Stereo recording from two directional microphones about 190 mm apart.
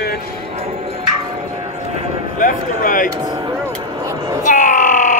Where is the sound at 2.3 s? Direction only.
45° left (ahead or behind).